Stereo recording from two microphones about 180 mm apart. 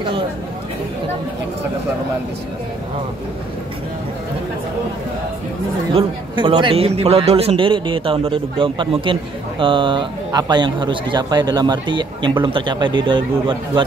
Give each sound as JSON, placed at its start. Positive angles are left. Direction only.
{"t": 5.9, "sound": "a man's voice", "side_deg": -30}